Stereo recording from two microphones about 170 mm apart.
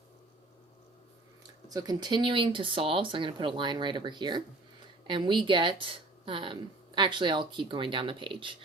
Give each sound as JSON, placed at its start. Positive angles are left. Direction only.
{"t": 1.7, "sound": "speech", "side_deg": -25}